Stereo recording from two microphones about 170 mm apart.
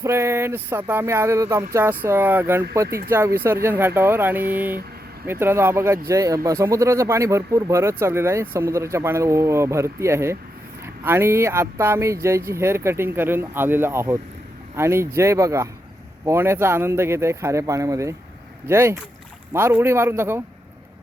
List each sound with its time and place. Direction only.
0.0 s a man's voice: 15° right (ahead or behind)